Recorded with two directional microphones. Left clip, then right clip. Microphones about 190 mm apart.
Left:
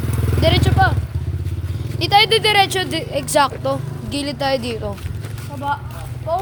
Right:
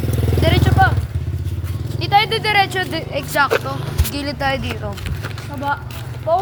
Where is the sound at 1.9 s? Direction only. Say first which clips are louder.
Left 2 dB; 40° left (ahead or behind).